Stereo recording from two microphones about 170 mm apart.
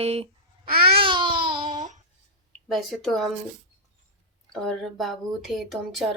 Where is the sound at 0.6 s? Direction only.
65° right (ahead or behind).